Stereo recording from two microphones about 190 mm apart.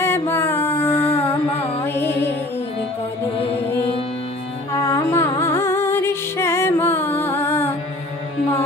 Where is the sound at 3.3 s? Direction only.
30° left (ahead or behind).